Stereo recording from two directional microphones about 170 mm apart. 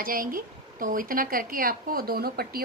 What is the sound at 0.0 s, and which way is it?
A woman's voice, 55° right (ahead or behind).